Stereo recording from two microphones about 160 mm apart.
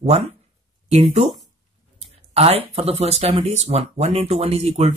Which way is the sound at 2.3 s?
40° right (ahead or behind).